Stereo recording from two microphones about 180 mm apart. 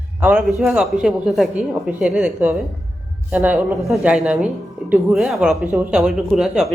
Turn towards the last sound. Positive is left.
turn(degrees=-5)  # may be behind; listen again after turning